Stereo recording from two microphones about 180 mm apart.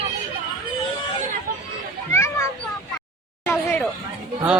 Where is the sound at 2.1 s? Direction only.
15° left (ahead or behind).